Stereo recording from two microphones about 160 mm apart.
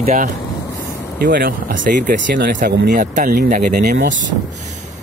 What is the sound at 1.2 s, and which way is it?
Speech, 65° right (ahead or behind).